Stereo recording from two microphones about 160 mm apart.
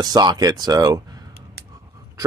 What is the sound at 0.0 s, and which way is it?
Speech, 25° right (ahead or behind).